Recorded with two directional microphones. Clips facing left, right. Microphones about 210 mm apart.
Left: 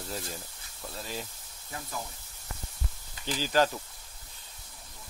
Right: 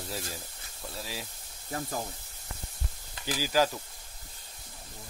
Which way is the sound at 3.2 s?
10° right (ahead or behind).